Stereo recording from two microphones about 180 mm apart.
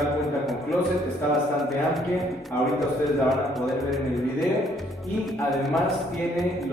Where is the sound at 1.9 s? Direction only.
Centre (ahead or behind).